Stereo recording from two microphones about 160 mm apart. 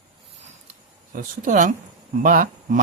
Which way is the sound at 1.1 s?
55° right (ahead or behind).